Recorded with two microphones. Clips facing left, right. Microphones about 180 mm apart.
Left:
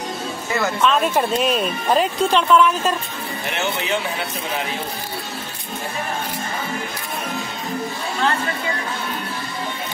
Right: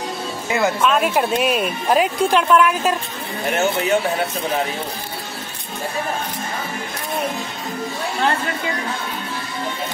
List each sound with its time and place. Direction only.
0.5 s speech: 10° right (ahead or behind)
3.4 s speech: 45° right (ahead or behind)